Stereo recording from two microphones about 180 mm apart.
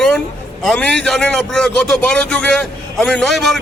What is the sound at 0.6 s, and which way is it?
A man's voice, 5° left (ahead or behind).